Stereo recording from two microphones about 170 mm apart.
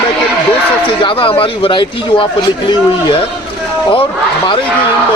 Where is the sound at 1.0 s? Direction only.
30° left (ahead or behind).